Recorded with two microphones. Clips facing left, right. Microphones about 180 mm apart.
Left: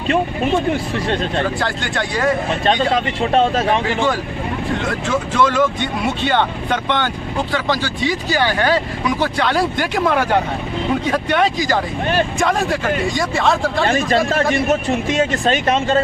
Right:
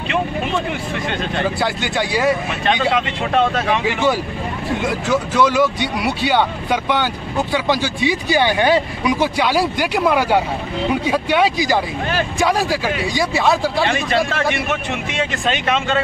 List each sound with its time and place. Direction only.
1.0 s a man's voice: 35° left (ahead or behind)
1.4 s speech: 5° right (ahead or behind)
2.6 s a man's voice: 35° left (ahead or behind)
5.4 s speech: 10° right (ahead or behind)
14.3 s a man's voice: 35° left (ahead or behind)